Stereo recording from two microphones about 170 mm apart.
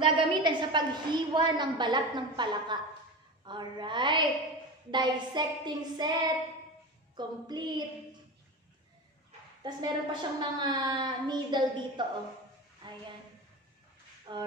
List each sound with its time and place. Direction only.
0.0 s a woman's voice: 30° right (ahead or behind)
9.6 s a woman's voice: 25° right (ahead or behind)
14.3 s a sound: 30° right (ahead or behind)